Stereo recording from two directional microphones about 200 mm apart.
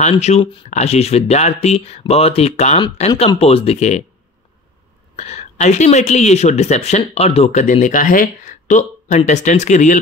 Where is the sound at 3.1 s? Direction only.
20° left (ahead or behind).